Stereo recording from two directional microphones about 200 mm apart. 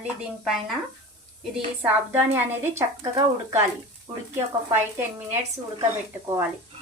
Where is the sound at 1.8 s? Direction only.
10° right (ahead or behind).